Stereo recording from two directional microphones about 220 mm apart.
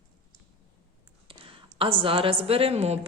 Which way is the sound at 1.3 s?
25° right (ahead or behind).